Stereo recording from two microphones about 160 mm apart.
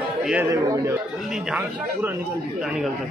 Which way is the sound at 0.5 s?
20° right (ahead or behind).